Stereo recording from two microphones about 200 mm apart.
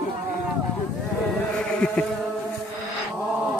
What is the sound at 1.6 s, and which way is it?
Insect, 5° left (ahead or behind).